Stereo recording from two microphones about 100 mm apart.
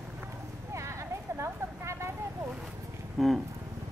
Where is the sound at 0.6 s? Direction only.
30° right (ahead or behind).